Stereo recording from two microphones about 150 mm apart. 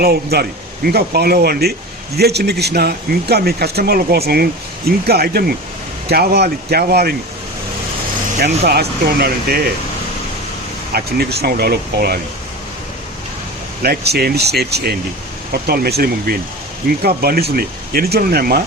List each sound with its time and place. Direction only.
0.0 s speech: 90° right
8.6 s speech: 90° right
10.9 s speech: 90° right
13.8 s speech: 90° right